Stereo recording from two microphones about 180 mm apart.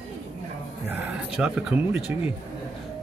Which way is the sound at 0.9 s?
5° right (ahead or behind).